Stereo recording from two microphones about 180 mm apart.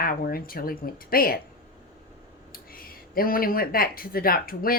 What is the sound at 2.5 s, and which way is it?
Speech, 55° left (ahead or behind).